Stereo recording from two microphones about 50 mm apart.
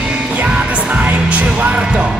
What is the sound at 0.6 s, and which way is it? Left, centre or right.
Speech, right.